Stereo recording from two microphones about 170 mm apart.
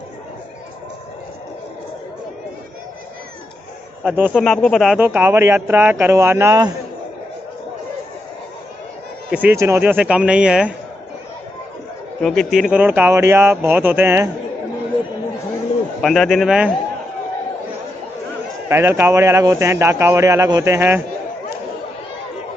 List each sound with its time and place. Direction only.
4.0 s a man's voice: 10° right (ahead or behind)
4.3 s a man's voice: 5° left (ahead or behind)
5.0 s speech: 10° right (ahead or behind)
9.3 s speech: 10° right (ahead or behind)
12.2 s speech: 5° left (ahead or behind); by 14.3 s 15° right (ahead or behind)
16.0 s a man's voice: centre (ahead or behind)
18.7 s speech: 15° right (ahead or behind)